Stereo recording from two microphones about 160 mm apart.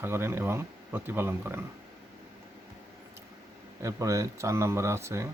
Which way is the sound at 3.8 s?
20° right (ahead or behind).